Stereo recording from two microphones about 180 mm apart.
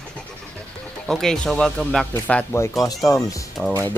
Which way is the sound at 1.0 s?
Centre (ahead or behind).